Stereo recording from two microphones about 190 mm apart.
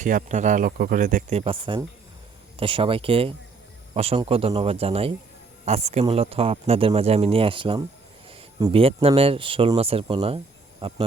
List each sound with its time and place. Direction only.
0.0 s speech: 40° right (ahead or behind)